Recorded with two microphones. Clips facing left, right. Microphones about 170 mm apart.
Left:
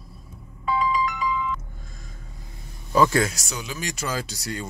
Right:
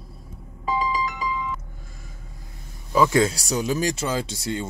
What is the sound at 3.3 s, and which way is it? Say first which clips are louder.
Speech: right 10 dB; 35° right (ahead or behind).